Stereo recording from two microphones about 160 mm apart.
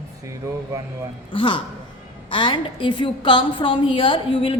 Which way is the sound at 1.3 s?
30° left (ahead or behind).